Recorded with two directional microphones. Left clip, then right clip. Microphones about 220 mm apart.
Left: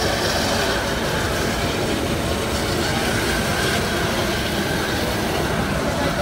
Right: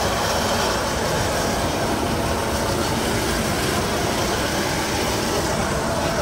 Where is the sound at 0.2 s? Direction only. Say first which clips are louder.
Even; 15° right (ahead or behind).